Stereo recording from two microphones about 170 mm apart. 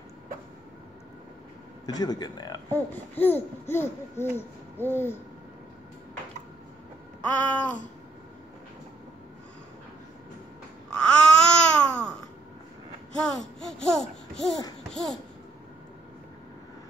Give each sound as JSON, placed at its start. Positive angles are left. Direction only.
{"t": 1.9, "sound": "speech", "side_deg": 25}
{"t": 2.7, "sound": "a sound", "side_deg": 10}
{"t": 7.3, "sound": "a sound", "side_deg": 10}
{"t": 11.0, "sound": "babbling", "side_deg": 5}
{"t": 13.2, "sound": "speech", "side_deg": 5}
{"t": 14.8, "sound": "babbling", "side_deg": 0}